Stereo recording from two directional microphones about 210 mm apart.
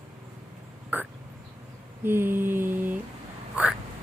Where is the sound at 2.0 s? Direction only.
10° right (ahead or behind).